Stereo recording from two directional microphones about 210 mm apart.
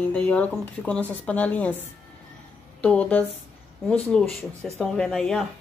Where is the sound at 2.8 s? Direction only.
5° left (ahead or behind).